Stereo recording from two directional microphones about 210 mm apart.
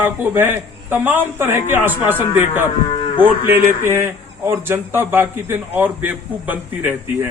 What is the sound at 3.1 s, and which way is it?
Speech, 10° right (ahead or behind).